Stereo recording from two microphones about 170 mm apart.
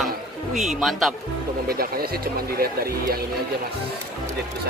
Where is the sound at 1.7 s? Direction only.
60° right (ahead or behind).